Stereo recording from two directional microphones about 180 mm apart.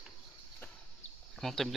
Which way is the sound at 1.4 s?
Centre (ahead or behind).